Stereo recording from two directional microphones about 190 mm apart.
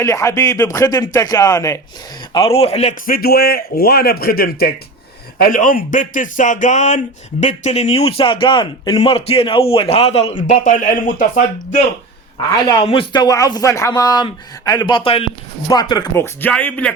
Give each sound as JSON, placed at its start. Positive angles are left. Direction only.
{"t": 0.0, "sound": "a man's voice", "side_deg": 15}
{"t": 2.3, "sound": "speech", "side_deg": 30}
{"t": 3.1, "sound": "a man's voice", "side_deg": 55}
{"t": 12.8, "sound": "a man's voice", "side_deg": 25}